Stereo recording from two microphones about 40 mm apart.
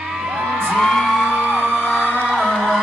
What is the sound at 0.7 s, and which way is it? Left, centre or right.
Music, centre.